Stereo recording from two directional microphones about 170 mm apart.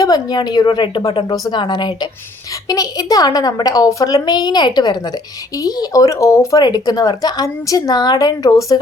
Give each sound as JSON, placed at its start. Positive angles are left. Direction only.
{"t": 0.0, "sound": "speech", "side_deg": 20}